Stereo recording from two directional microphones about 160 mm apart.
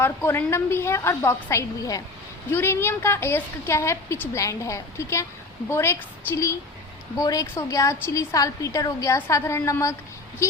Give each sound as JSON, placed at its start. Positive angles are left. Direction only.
{"t": 0.0, "sound": "a woman's voice", "side_deg": 15}